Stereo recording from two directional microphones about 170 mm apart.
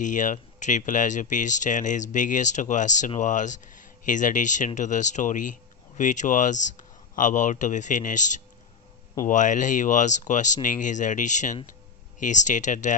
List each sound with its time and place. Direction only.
0.0 s speech: 50° left (ahead or behind)